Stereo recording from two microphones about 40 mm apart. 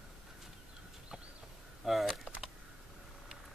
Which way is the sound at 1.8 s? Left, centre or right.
Centre.